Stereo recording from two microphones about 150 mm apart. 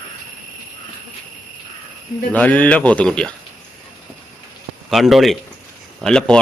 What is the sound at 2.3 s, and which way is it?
Speech, 10° left (ahead or behind).